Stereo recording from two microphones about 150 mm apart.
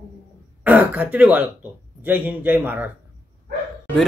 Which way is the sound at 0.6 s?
10° right (ahead or behind).